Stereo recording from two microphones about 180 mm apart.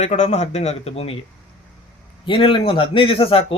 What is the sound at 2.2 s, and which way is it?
A man's voice, 30° left (ahead or behind).